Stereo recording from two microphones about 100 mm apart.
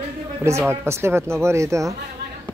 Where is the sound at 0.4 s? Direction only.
25° right (ahead or behind).